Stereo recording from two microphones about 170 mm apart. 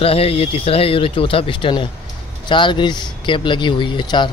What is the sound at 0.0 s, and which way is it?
Speech, 35° left (ahead or behind).